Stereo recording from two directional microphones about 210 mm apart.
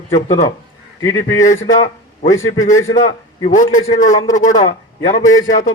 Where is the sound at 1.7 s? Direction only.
35° left (ahead or behind).